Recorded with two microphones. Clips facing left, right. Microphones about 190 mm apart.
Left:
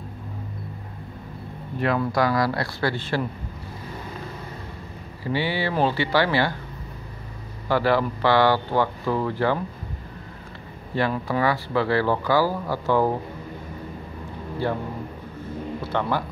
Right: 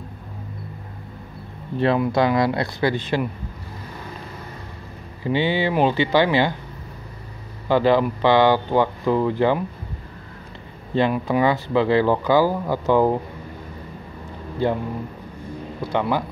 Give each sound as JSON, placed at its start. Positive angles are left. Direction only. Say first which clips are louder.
{"t": 2.0, "sound": "speech", "louder": "right 1 dB", "side_deg": -20}
{"t": 5.2, "sound": "speech", "louder": "right 4 dB", "side_deg": -20}
{"t": 7.6, "sound": "speech", "louder": "right 4 dB", "side_deg": -20}
{"t": 11.0, "sound": "speech", "louder": "right 4 dB", "side_deg": -20}
{"t": 14.6, "sound": "speech", "louder": "right 4 dB", "side_deg": -20}
{"t": 15.8, "sound": "speech", "louder": "right 4 dB", "side_deg": -15}